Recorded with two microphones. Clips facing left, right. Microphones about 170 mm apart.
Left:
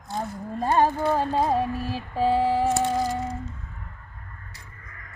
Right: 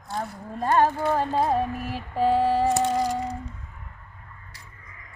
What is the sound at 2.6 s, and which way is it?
Music, centre (ahead or behind).